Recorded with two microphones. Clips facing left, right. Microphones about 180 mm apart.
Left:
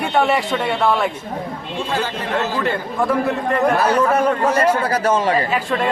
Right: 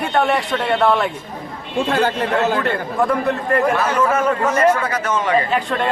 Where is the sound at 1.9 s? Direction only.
60° right (ahead or behind).